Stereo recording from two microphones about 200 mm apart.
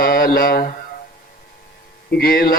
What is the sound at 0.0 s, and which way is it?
Mantra, 45° left (ahead or behind).